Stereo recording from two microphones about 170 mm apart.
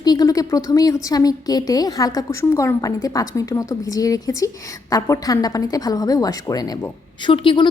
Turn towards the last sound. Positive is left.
turn(degrees=30)  # may be behind; listen again after turning